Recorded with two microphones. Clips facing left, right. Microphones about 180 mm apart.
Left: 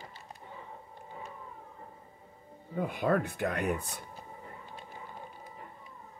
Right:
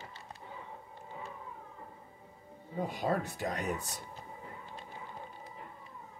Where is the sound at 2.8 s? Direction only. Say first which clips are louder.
Left 4 dB; 60° left (ahead or behind).